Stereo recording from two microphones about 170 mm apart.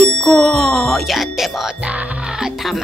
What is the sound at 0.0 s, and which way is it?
Speech, centre (ahead or behind).